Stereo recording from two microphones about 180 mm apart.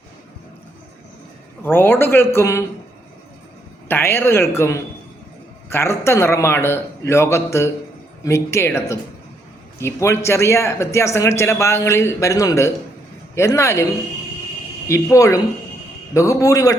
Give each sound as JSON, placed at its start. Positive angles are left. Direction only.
{"t": 1.6, "sound": "speech", "side_deg": 10}
{"t": 3.8, "sound": "speech", "side_deg": 10}
{"t": 14.8, "sound": "speech", "side_deg": 15}